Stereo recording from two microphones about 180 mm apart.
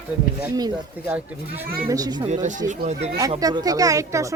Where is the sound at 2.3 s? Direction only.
45° right (ahead or behind).